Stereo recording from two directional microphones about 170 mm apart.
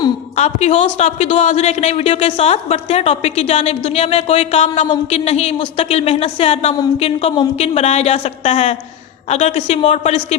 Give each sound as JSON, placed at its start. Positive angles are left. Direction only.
{"t": 0.3, "sound": "a man's voice", "side_deg": 40}